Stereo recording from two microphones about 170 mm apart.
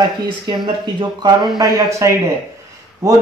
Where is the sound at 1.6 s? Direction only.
15° right (ahead or behind).